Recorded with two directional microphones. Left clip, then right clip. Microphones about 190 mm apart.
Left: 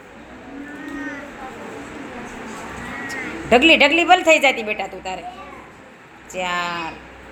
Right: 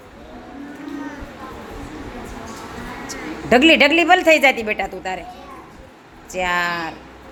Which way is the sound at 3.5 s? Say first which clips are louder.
Even; 20° right (ahead or behind).